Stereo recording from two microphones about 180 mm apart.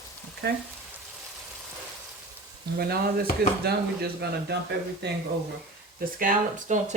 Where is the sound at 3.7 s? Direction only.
65° right (ahead or behind).